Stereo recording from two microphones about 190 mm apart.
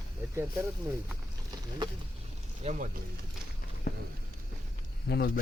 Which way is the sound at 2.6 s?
35° right (ahead or behind).